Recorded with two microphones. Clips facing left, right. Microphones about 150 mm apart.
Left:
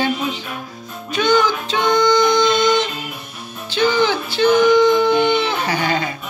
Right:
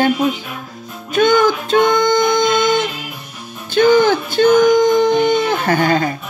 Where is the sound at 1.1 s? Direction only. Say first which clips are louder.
Right 4 dB; 50° right (ahead or behind).